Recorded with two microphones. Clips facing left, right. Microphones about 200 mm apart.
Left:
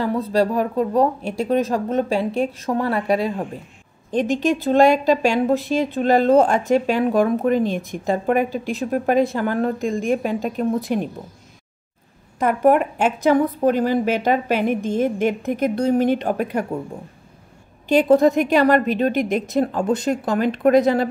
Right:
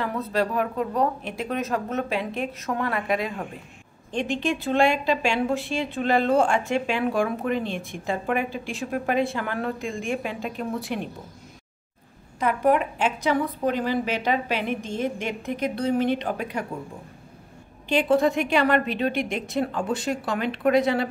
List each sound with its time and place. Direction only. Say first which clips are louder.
0.0 s a woman's voice: left 6 dB; 30° left (ahead or behind)
12.4 s a woman's voice: left 5 dB; 50° left (ahead or behind)
17.8 s a woman's voice: left 6 dB; 40° left (ahead or behind)